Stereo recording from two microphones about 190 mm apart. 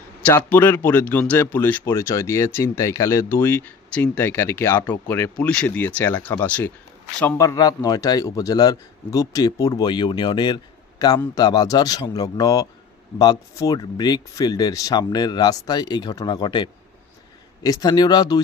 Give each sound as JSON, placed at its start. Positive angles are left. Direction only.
{"t": 0.2, "sound": "a man's voice", "side_deg": 10}